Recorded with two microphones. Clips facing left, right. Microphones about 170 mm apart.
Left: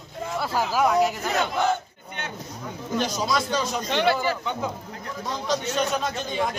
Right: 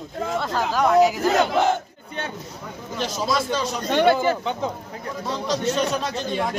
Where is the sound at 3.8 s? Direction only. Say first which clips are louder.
Right 7 dB; 50° right (ahead or behind).